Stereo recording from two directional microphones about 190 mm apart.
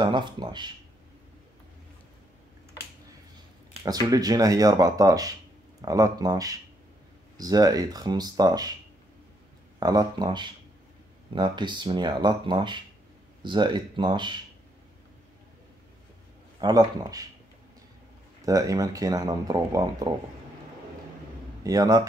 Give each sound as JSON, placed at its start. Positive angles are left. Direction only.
{"t": 0.0, "sound": "speech", "side_deg": -25}
{"t": 3.8, "sound": "speech", "side_deg": -20}
{"t": 9.8, "sound": "speech", "side_deg": -20}
{"t": 16.6, "sound": "speech", "side_deg": -20}
{"t": 18.4, "sound": "speech", "side_deg": -20}
{"t": 21.6, "sound": "speech", "side_deg": -15}